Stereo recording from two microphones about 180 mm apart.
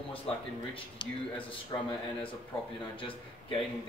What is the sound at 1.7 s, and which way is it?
Speech, 25° left (ahead or behind).